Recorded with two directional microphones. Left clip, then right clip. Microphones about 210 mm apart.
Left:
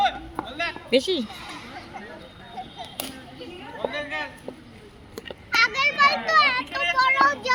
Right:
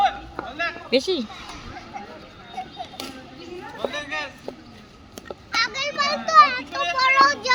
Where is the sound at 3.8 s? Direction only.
50° right (ahead or behind).